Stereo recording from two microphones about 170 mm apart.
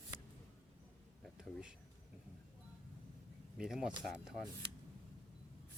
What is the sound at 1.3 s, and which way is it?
Speech, centre (ahead or behind).